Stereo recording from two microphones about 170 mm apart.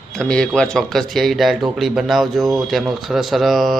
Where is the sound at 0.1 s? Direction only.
5° left (ahead or behind).